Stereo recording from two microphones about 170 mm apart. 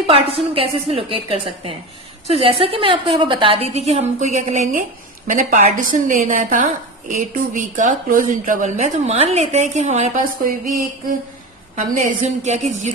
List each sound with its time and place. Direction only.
0.0 s a woman's voice: 35° right (ahead or behind)
12.0 s a woman's voice: 40° right (ahead or behind)